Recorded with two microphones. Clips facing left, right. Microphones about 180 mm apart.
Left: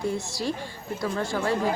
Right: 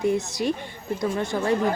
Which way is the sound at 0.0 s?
20° right (ahead or behind).